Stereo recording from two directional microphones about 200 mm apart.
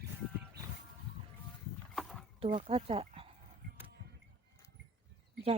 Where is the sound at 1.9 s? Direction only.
Centre (ahead or behind).